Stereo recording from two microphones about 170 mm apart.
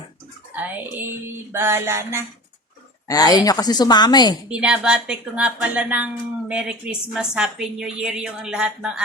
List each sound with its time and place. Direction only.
0.5 s music: 10° right (ahead or behind)
3.1 s a woman's voice: 20° left (ahead or behind)
4.4 s music: 5° right (ahead or behind)
6.5 s a woman's voice: 5° right (ahead or behind)